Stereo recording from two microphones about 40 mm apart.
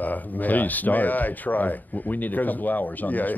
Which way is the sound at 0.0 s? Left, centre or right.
Left.